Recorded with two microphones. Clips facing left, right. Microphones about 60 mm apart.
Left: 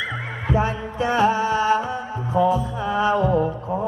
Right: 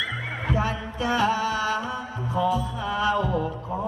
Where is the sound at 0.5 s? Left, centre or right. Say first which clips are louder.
Left 5 dB; left.